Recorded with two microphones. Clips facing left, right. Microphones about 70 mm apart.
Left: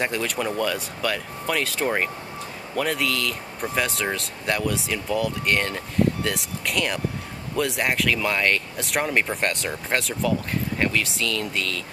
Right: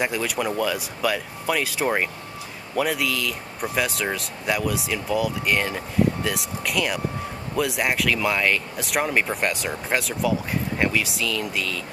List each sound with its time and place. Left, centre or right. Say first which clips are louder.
0.0 s speech: right 1 dB; centre